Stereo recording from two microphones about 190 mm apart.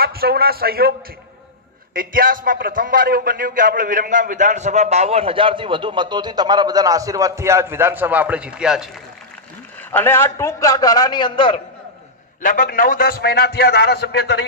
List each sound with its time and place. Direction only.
0.0 s a man's voice: 55° right (ahead or behind)
2.0 s a man's voice: 45° right (ahead or behind); by 8.9 s 5° right (ahead or behind)
9.8 s a man's voice: 10° left (ahead or behind)
12.4 s a man's voice: 45° left (ahead or behind); by 14.4 s 65° left (ahead or behind)